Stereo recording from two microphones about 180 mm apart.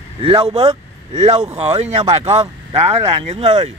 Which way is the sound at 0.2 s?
30° right (ahead or behind).